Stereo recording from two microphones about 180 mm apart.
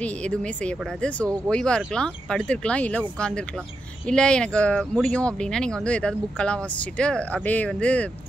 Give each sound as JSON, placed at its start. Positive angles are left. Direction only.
{"t": 0.0, "sound": "speech", "side_deg": 5}